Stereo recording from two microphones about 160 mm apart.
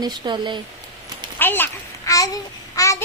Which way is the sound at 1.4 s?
10° left (ahead or behind).